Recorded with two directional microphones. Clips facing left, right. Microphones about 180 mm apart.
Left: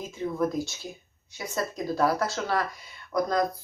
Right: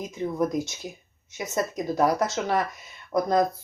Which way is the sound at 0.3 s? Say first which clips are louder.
Right 1 dB; 20° right (ahead or behind).